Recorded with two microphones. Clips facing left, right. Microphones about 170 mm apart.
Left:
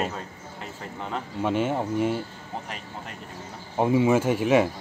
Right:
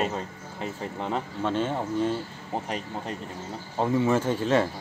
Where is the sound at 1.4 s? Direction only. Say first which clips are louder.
Left 4 dB; 10° left (ahead or behind).